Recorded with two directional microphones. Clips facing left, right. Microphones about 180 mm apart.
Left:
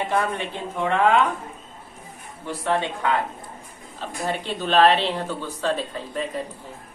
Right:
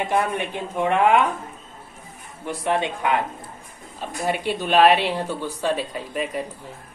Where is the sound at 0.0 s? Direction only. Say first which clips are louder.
Right 1 dB; 15° right (ahead or behind).